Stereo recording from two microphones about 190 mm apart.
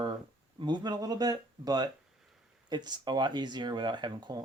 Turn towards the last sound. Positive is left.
turn(degrees=-25)  # may be behind; listen again after turning